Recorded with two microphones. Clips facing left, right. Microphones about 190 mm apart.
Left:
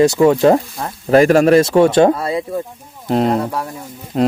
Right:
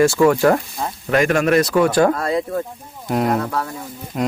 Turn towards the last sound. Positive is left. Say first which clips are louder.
# left 6 dB
turn(degrees=30)  # may be behind; listen again after turning